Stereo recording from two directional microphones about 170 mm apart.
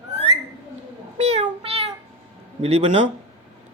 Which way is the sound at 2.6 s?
40° right (ahead or behind).